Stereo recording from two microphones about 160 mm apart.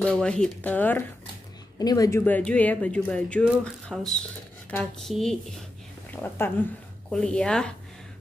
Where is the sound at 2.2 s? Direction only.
10° left (ahead or behind).